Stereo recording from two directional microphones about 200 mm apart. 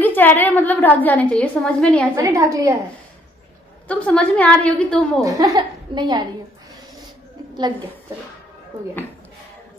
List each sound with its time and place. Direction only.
0.0 s a woman's voice: 10° left (ahead or behind)
2.1 s a woman's voice: 15° right (ahead or behind)
3.8 s a woman's voice: 5° left (ahead or behind)
5.2 s a woman's voice: 15° right (ahead or behind)